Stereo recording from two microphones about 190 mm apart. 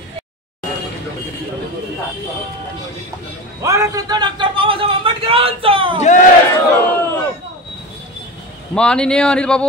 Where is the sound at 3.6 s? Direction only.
15° right (ahead or behind).